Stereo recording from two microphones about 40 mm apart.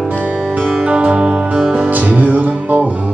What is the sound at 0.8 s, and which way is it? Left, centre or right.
Music, right.